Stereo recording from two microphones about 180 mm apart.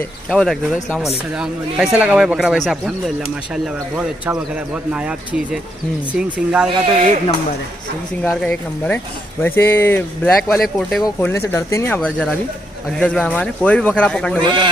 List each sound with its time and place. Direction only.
0.3 s speech: centre (ahead or behind)
8.2 s speech: 5° left (ahead or behind)
10.5 s speech: centre (ahead or behind)
14.4 s a man's voice: 25° right (ahead or behind)